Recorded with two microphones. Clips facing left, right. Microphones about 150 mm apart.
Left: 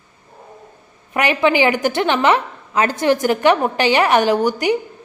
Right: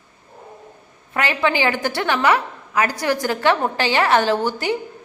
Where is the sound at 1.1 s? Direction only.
20° left (ahead or behind).